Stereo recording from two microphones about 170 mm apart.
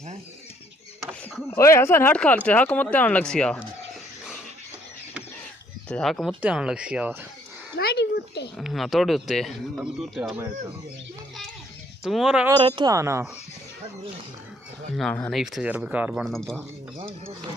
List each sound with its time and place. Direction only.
1.5 s speech: 15° left (ahead or behind)
5.9 s speech: 5° left (ahead or behind)
7.7 s a sound: 75° left (ahead or behind)
8.5 s speech: centre (ahead or behind)
12.0 s speech: centre (ahead or behind)
12.5 s speech: 30° right (ahead or behind)
15.0 s speech: 5° left (ahead or behind)
16.3 s speech: centre (ahead or behind)